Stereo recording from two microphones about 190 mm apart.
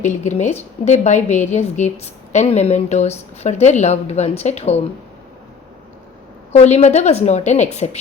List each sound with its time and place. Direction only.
0.0 s a woman's voice: 40° left (ahead or behind)
6.5 s a woman's voice: 35° left (ahead or behind)